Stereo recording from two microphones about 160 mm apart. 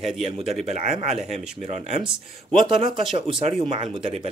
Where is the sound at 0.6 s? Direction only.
45° right (ahead or behind).